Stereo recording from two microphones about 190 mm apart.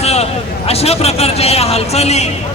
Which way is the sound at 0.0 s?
35° left (ahead or behind).